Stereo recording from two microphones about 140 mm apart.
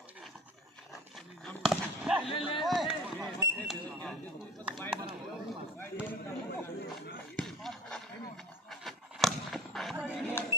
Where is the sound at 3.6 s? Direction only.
Centre (ahead or behind).